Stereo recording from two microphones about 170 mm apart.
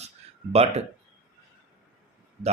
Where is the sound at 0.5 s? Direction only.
40° right (ahead or behind).